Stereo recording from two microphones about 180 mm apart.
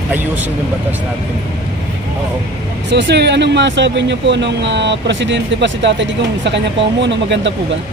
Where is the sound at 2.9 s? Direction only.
70° right (ahead or behind); by 7.6 s 85° right.